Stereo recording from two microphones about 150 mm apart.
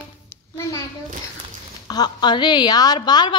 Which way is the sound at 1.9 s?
30° left (ahead or behind).